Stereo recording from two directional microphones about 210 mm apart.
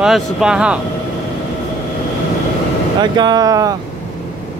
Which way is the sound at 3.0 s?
20° right (ahead or behind).